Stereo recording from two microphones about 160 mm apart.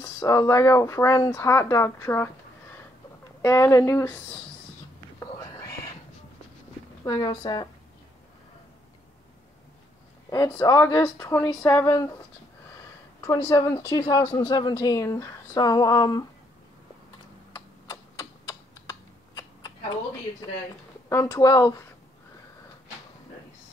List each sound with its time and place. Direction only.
0.0 s speech: 20° left (ahead or behind)
3.4 s speech: 20° left (ahead or behind)
5.2 s whispering: 20° left (ahead or behind)
7.1 s speech: 25° left (ahead or behind)
10.3 s speech: 25° left (ahead or behind)
13.2 s speech: 25° left (ahead or behind)
17.5 s computer keyboard: 25° left (ahead or behind)
21.1 s speech: 20° left (ahead or behind)